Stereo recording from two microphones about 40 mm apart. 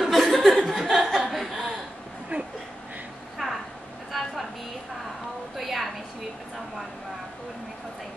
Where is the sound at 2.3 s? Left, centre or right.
Right.